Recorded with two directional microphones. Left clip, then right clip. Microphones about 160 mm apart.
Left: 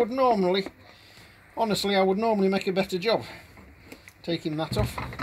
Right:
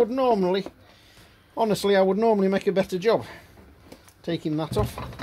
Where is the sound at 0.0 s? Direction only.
55° right (ahead or behind).